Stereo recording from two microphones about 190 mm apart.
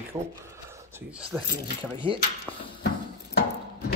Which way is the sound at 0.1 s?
20° right (ahead or behind).